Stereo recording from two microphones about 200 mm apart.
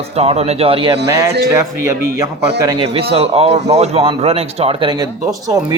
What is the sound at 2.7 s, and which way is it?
A man's voice, 30° right (ahead or behind).